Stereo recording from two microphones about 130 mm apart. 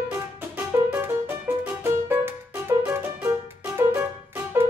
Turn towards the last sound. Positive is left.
turn(degrees=-20)  # may be behind; listen again after turning